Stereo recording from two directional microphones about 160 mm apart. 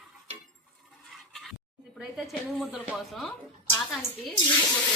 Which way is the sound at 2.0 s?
Centre (ahead or behind).